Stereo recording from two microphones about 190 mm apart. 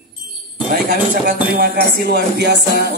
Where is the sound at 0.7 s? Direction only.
45° right (ahead or behind).